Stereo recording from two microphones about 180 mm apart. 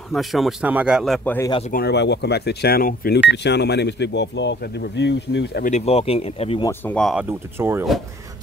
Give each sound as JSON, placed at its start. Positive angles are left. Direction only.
{"t": 0.1, "sound": "speech", "side_deg": 0}
{"t": 1.7, "sound": "speech", "side_deg": 65}
{"t": 3.3, "sound": "speech", "side_deg": 70}
{"t": 5.7, "sound": "speech", "side_deg": 35}
{"t": 6.9, "sound": "speech", "side_deg": 0}
{"t": 7.2, "sound": "speech", "side_deg": -15}